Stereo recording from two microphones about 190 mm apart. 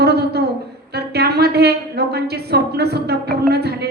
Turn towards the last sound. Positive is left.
turn(degrees=-60)  # may be behind; listen again after turning